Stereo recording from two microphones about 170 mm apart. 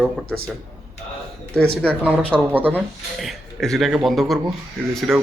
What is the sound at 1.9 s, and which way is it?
Speech, 10° right (ahead or behind).